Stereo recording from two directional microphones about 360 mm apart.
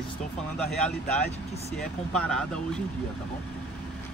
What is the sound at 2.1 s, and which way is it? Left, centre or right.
Speech, centre.